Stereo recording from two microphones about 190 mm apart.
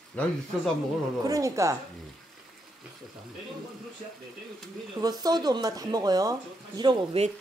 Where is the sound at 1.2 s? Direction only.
15° right (ahead or behind).